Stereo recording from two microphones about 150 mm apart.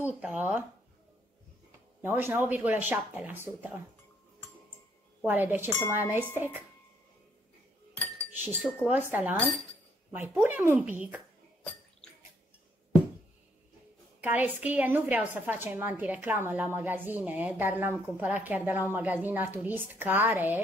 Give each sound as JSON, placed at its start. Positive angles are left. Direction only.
{"t": 0.0, "sound": "a woman's voice", "side_deg": -10}
{"t": 2.0, "sound": "a woman's voice", "side_deg": -15}
{"t": 5.2, "sound": "a woman's voice", "side_deg": -10}
{"t": 8.3, "sound": "a woman's voice", "side_deg": -10}
{"t": 14.2, "sound": "a woman's voice", "side_deg": -10}